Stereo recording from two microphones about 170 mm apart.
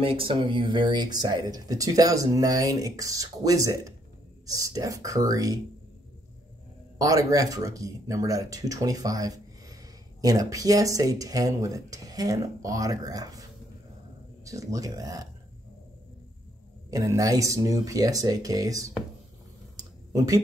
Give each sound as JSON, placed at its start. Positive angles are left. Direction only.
{"t": 0.0, "sound": "speech", "side_deg": -30}
{"t": 7.0, "sound": "speech", "side_deg": -20}
{"t": 16.9, "sound": "speech", "side_deg": -20}
{"t": 19.8, "sound": "a sound", "side_deg": -20}